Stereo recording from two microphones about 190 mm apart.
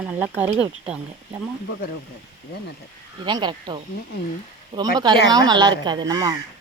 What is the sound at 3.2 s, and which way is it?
Speech, 25° right (ahead or behind).